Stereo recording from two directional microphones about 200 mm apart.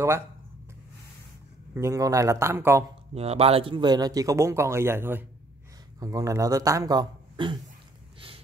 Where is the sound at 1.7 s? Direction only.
15° right (ahead or behind).